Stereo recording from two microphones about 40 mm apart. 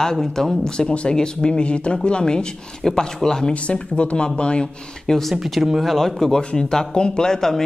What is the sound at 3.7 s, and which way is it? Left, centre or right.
Speech, left.